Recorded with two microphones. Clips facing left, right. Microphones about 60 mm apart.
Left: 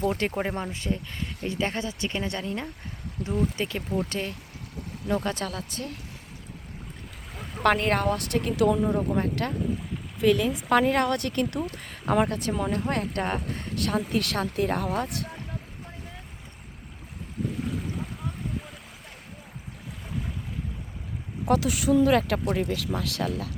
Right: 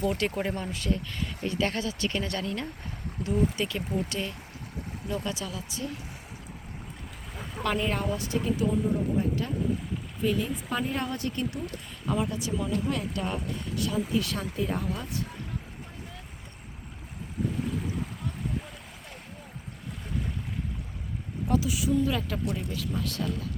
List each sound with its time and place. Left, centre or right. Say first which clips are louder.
0.0 s speech: left 2 dB; left
3.2 s speech: even; left
3.6 s speech: left 1 dB; left
7.3 s boat: even; centre
7.6 s speech: left 6 dB; left
10.2 s speech: left 6 dB; left
14.1 s speech: left 2 dB; left
17.5 s boat: even; centre
21.4 s speech: left 4 dB; left
22.4 s speech: left 5 dB; left